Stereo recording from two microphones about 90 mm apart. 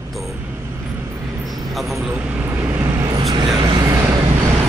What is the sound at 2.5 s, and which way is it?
Vehicle, 25° right (ahead or behind).